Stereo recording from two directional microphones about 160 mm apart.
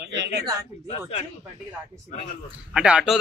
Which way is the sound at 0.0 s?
90° right.